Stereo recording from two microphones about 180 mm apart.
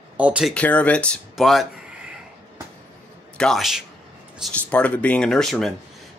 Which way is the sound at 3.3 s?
Centre (ahead or behind).